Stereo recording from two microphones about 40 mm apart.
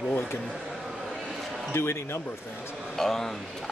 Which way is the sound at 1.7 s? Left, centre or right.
Left.